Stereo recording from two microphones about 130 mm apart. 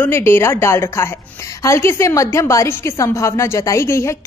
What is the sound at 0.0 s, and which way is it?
Speech, 20° left (ahead or behind).